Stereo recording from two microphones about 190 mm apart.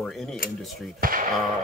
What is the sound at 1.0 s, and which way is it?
Speech, 50° right (ahead or behind).